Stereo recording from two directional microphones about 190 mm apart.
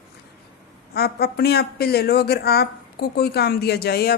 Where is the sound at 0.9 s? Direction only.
55° left (ahead or behind).